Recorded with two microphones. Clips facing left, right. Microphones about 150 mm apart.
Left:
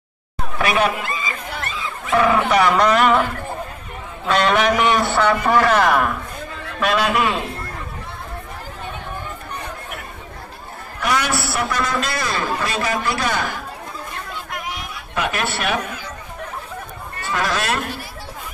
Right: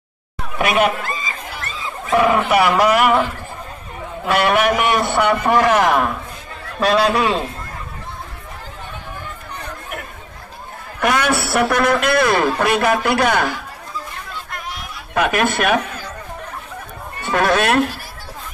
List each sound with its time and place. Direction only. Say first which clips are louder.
0.6 s speech: right 2 dB; 20° right (ahead or behind)
2.1 s a man's voice: right 1 dB; 10° right (ahead or behind)
4.3 s a man's voice: right 1 dB; 10° right (ahead or behind)
6.8 s a man's voice: right 3 dB; 35° right (ahead or behind)
11.0 s a man's voice: right 4 dB; 55° right (ahead or behind)
14.5 s chatter: left 2 dB; 5° left (ahead or behind)
15.1 s speech: right 6 dB; 55° right (ahead or behind)
17.3 s a man's voice: right 6 dB; 60° right (ahead or behind)